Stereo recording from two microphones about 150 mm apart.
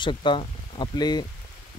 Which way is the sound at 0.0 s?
30° left (ahead or behind).